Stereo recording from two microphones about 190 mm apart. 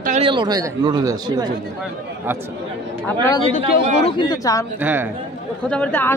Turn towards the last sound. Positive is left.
turn(degrees=10)  # may be behind; listen again after turning